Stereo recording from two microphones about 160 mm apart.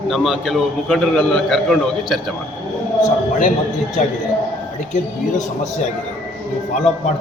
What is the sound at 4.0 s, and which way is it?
Speech, 50° left (ahead or behind).